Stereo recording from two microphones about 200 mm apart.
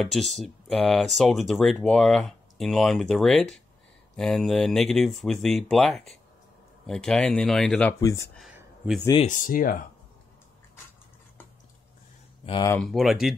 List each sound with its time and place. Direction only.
0.0 s speech: centre (ahead or behind)
8.5 s a sound: 5° right (ahead or behind)
9.2 s speech: 40° left (ahead or behind)
12.4 s speech: 20° left (ahead or behind)
12.7 s speech: centre (ahead or behind)